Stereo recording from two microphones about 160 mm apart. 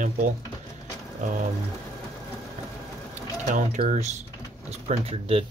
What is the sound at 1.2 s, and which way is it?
Speech, 50° right (ahead or behind).